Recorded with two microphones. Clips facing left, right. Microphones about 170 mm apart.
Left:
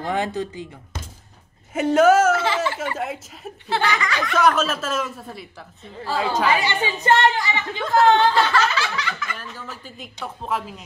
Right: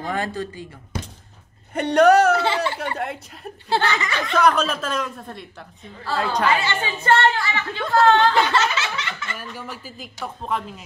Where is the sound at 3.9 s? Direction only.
25° right (ahead or behind).